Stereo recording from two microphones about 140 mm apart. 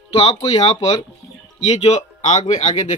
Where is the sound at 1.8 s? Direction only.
55° left (ahead or behind).